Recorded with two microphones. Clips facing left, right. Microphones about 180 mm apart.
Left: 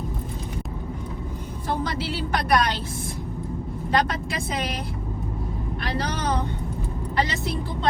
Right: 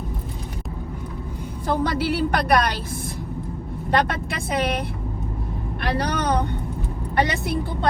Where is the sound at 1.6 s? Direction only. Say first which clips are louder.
Right 5 dB; 60° right (ahead or behind).